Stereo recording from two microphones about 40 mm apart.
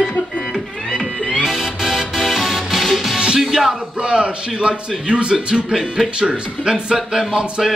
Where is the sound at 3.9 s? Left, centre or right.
Right.